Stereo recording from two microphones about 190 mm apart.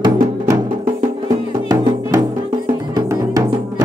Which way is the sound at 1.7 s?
20° right (ahead or behind).